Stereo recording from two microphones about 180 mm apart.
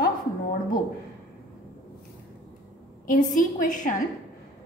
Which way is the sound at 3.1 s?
45° left (ahead or behind).